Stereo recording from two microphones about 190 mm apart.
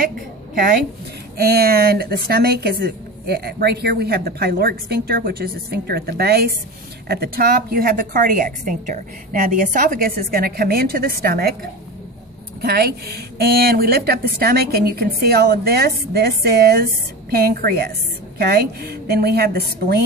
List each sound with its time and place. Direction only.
1.4 s a woman's voice: 55° right (ahead or behind)
12.6 s a woman's voice: 55° right (ahead or behind)